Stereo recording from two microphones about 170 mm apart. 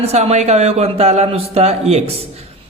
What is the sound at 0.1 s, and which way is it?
A man's voice, 40° right (ahead or behind).